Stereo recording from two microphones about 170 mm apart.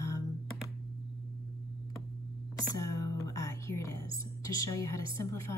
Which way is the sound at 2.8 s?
20° left (ahead or behind).